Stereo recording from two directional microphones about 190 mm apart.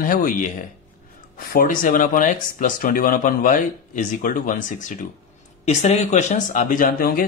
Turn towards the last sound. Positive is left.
turn(degrees=50)  # may be behind; listen again after turning